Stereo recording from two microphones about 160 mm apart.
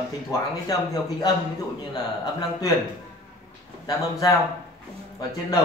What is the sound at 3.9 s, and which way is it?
Speech, 20° left (ahead or behind).